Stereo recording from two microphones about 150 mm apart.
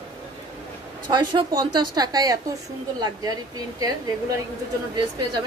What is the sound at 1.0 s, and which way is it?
A woman's voice, 30° right (ahead or behind).